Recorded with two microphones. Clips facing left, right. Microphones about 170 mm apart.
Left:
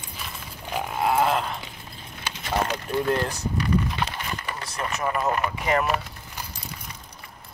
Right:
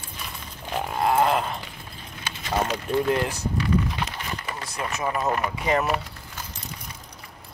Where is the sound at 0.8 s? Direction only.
Centre (ahead or behind).